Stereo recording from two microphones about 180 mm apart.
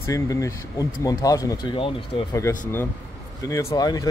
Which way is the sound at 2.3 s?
15° left (ahead or behind).